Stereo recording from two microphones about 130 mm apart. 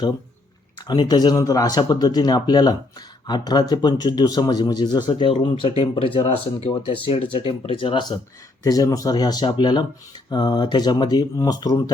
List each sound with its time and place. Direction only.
0.9 s a man's voice: 35° left (ahead or behind)
8.6 s a man's voice: 30° left (ahead or behind)